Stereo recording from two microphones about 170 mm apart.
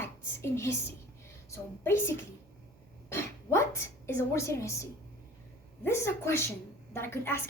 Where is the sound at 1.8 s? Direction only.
15° left (ahead or behind).